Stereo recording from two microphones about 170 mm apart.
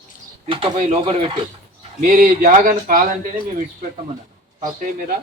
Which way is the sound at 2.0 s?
50° right (ahead or behind).